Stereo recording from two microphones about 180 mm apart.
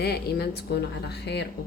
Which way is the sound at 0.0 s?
60° left (ahead or behind).